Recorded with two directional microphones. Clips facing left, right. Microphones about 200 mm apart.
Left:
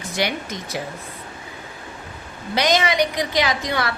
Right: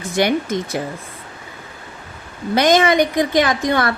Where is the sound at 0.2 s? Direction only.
50° right (ahead or behind).